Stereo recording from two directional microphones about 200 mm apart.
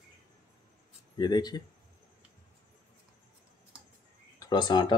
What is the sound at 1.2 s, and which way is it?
Speech, 20° left (ahead or behind).